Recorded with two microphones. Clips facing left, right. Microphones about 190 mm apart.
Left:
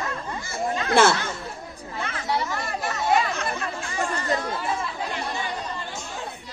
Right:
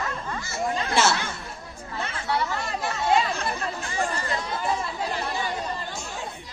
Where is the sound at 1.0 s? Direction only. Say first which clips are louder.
Left 5 dB; 55° left (ahead or behind).